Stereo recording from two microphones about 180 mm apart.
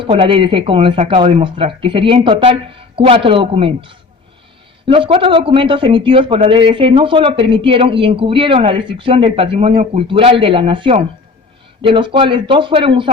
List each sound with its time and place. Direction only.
0.0 s a man's voice: 30° right (ahead or behind)